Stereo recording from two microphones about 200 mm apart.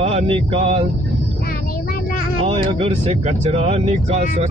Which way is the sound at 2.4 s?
30° right (ahead or behind).